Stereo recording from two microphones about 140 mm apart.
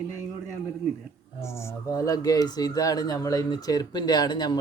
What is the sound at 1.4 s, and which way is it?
Speech, 20° left (ahead or behind).